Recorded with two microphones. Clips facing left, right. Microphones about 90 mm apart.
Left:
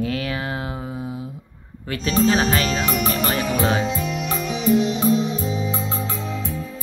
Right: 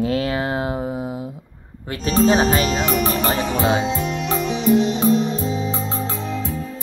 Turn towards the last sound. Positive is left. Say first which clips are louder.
# right 2 dB
turn(degrees=-40)  # may be behind; listen again after turning